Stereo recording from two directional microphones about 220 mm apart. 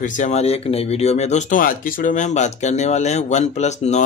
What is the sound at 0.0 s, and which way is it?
Speech, 30° left (ahead or behind).